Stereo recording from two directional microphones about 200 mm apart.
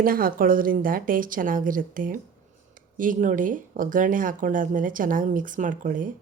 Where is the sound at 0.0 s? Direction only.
45° right (ahead or behind).